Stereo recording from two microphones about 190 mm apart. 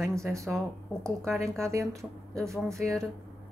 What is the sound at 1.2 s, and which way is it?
Speech, 15° right (ahead or behind).